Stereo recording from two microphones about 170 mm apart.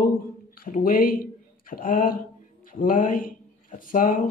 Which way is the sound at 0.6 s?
55° left (ahead or behind).